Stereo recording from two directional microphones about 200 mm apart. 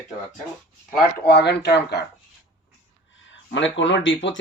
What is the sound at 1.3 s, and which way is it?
Speech, 55° left (ahead or behind).